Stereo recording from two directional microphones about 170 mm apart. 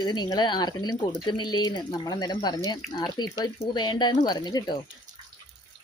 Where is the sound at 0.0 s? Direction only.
25° left (ahead or behind).